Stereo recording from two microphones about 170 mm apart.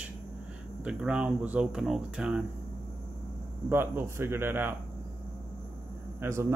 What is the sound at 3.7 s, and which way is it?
Speech, 15° right (ahead or behind).